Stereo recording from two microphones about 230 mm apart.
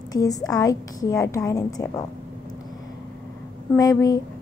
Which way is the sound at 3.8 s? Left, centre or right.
Centre.